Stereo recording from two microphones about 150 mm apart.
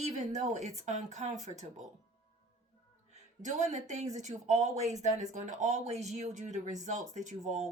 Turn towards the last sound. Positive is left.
turn(degrees=-50)  # may be behind; listen again after turning